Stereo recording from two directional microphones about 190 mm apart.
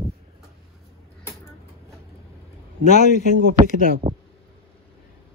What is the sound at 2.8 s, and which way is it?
Speech, 40° left (ahead or behind).